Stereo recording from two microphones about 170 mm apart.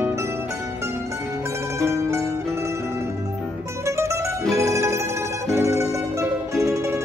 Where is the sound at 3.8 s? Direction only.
15° right (ahead or behind).